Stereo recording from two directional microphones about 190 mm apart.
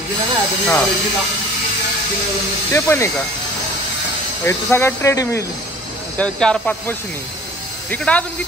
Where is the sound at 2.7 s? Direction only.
15° left (ahead or behind).